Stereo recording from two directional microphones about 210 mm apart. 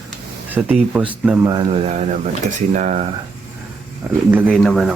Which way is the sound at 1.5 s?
25° right (ahead or behind).